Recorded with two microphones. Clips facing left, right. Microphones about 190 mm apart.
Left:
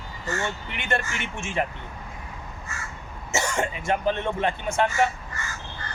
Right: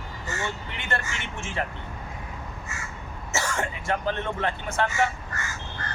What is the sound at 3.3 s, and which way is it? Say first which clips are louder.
Speech: left 3 dB; 15° left (ahead or behind).